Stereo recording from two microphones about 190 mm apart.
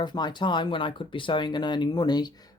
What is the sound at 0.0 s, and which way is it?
Speech, 25° left (ahead or behind).